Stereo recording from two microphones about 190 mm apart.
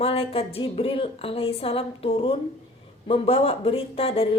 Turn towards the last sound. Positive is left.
turn(degrees=30)  # may be behind; listen again after turning